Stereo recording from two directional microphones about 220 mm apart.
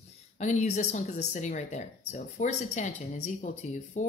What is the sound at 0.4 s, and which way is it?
Speech, 30° left (ahead or behind).